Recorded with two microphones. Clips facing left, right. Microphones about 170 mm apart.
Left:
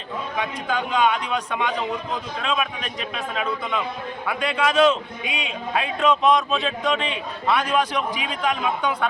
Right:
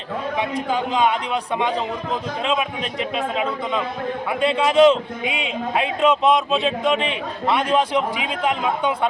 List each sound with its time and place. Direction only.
0.3 s a man's voice: 30° right (ahead or behind)